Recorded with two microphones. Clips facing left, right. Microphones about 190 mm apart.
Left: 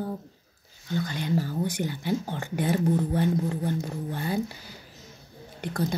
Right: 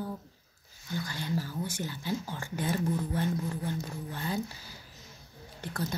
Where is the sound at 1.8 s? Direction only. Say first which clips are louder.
Left 6 dB; 55° left (ahead or behind).